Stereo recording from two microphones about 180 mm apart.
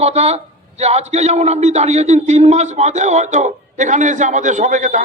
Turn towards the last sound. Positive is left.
turn(degrees=-45)  # may be behind; listen again after turning